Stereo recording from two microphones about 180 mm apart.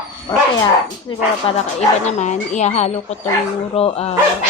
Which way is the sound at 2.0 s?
40° left (ahead or behind).